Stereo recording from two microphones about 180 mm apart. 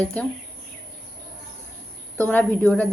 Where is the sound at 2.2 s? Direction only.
10° left (ahead or behind).